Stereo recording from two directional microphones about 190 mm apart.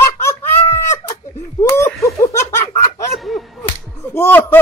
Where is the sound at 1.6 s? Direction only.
15° left (ahead or behind).